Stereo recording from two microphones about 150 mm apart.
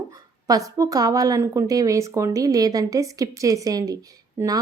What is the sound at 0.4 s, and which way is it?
A woman's voice, 20° right (ahead or behind).